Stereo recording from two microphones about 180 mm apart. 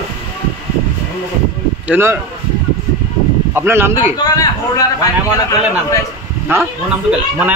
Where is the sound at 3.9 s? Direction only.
20° left (ahead or behind).